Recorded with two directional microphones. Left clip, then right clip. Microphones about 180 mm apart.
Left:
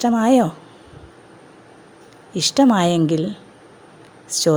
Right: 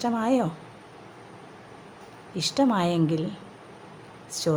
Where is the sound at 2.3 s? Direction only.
40° left (ahead or behind).